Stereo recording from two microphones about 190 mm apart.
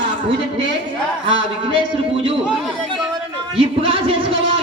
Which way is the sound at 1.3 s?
25° right (ahead or behind).